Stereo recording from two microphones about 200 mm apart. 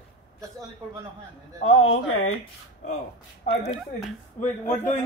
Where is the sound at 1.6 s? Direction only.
85° left.